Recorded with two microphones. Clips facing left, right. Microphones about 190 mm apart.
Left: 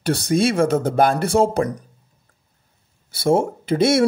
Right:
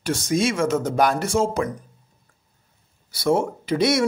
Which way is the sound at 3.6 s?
50° left (ahead or behind).